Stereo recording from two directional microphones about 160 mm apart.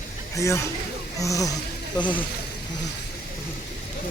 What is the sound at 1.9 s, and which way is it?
Speech, 10° left (ahead or behind).